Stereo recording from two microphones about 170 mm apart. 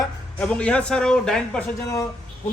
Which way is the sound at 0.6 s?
5° left (ahead or behind).